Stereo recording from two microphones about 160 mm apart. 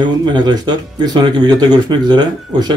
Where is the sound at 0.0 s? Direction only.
25° right (ahead or behind).